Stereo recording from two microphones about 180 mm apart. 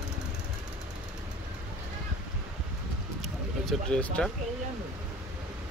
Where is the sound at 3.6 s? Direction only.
5° left (ahead or behind).